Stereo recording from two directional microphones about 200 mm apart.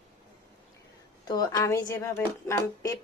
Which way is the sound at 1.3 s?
20° left (ahead or behind).